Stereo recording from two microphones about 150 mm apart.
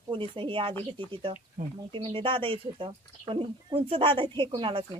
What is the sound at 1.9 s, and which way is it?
Speech, 35° right (ahead or behind).